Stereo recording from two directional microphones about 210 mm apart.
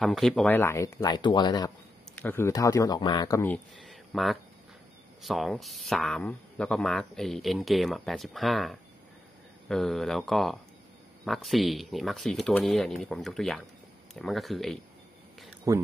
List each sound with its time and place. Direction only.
0.0 s speech: centre (ahead or behind); by 1.7 s 20° left (ahead or behind)
2.1 s speech: 10° left (ahead or behind)
15.7 s speech: 15° right (ahead or behind)